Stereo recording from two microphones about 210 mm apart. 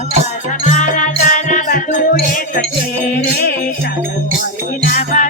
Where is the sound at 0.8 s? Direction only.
40° left (ahead or behind).